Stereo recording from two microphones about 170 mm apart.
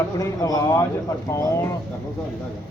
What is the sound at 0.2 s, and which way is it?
Speech, 20° left (ahead or behind).